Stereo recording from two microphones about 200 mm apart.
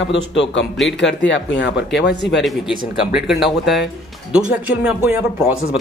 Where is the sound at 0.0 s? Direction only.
65° left (ahead or behind).